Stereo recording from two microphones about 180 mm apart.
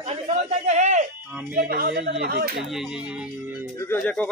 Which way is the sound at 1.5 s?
55° right (ahead or behind).